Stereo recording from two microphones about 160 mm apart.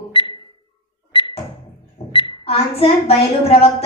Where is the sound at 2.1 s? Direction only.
30° left (ahead or behind).